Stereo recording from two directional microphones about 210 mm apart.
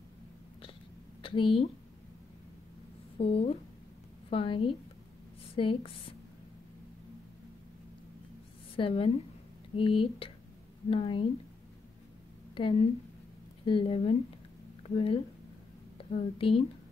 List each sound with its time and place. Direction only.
1.2 s a woman's voice: 25° left (ahead or behind)
3.2 s speech: 25° left (ahead or behind)
8.7 s speech: 25° left (ahead or behind)
12.5 s speech: 25° left (ahead or behind)
16.2 s speech: 25° left (ahead or behind)